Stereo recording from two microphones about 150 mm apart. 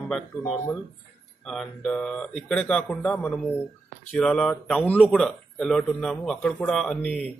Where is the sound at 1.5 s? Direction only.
5° left (ahead or behind).